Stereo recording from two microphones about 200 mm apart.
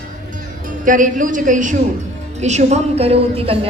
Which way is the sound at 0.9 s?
40° right (ahead or behind).